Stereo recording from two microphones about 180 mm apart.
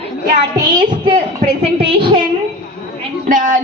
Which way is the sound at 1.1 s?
30° right (ahead or behind).